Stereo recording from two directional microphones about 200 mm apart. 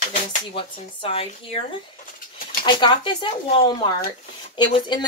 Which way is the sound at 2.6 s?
25° left (ahead or behind).